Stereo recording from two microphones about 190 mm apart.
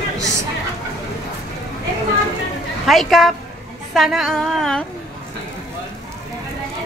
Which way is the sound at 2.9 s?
Centre (ahead or behind).